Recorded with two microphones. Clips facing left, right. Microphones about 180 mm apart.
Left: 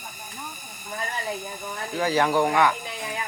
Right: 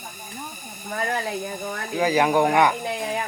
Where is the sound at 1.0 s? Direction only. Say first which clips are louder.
Right 7 dB; 70° right (ahead or behind).